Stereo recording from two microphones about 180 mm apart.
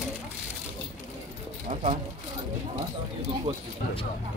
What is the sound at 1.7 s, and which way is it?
Speech, 40° right (ahead or behind).